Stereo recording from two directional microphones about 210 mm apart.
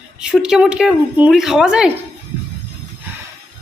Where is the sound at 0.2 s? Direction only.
5° right (ahead or behind).